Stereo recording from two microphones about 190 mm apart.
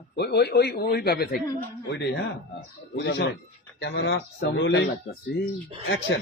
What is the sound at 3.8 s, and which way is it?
Speech, 70° left (ahead or behind).